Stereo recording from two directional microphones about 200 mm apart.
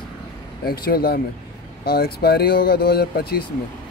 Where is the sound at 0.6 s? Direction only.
50° left (ahead or behind).